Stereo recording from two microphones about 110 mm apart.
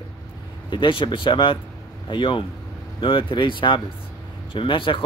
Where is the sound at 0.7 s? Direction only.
50° left (ahead or behind).